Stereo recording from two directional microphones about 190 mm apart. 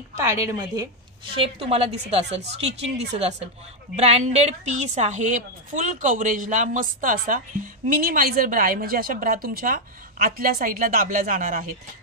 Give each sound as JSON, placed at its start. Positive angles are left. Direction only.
{"t": 0.2, "sound": "a woman's voice", "side_deg": -15}
{"t": 1.3, "sound": "a woman's voice", "side_deg": -30}